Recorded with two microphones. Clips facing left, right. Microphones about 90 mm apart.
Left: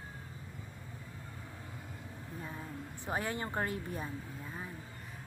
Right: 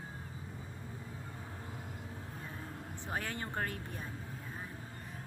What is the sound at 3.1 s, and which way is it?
Speech, 15° left (ahead or behind).